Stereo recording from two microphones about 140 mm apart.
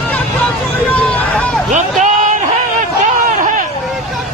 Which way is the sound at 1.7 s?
65° right (ahead or behind).